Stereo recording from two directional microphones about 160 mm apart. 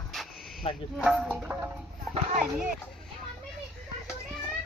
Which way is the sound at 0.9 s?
5° right (ahead or behind).